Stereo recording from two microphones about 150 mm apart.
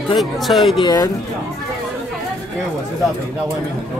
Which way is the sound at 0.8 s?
25° left (ahead or behind).